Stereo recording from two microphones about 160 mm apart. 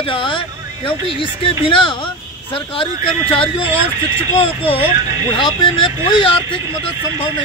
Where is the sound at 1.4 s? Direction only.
35° left (ahead or behind).